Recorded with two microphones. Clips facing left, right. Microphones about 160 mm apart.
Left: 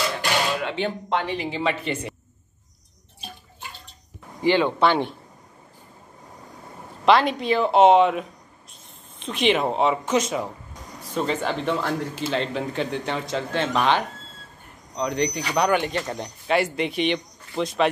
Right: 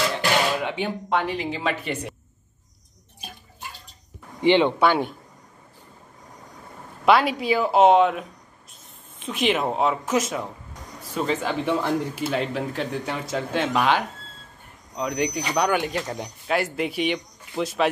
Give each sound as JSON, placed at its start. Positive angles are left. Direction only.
{"t": 0.7, "sound": "speech", "side_deg": -10}
{"t": 4.4, "sound": "speech", "side_deg": -20}
{"t": 4.7, "sound": "speech", "side_deg": -5}
{"t": 7.1, "sound": "speech", "side_deg": -5}